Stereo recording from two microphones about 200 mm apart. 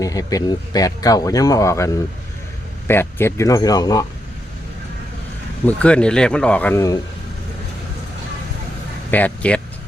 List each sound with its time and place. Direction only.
0.0 s speech: 15° left (ahead or behind)
5.6 s speech: 5° left (ahead or behind)
9.0 s speech: 10° left (ahead or behind)